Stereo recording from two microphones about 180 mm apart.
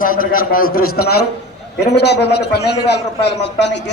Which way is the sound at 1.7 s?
65° left (ahead or behind).